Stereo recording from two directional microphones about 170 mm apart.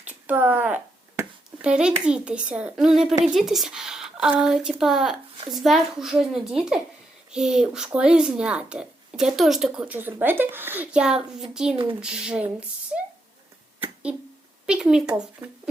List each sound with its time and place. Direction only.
0.0 s speech: 10° right (ahead or behind)
13.8 s a sound: 5° right (ahead or behind)
14.7 s speech: 5° right (ahead or behind)
15.4 s speech: 20° right (ahead or behind)